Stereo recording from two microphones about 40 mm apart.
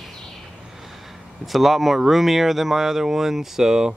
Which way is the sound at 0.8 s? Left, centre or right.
Centre.